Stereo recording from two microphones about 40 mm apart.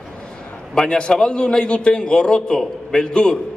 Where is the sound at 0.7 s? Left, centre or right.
Centre.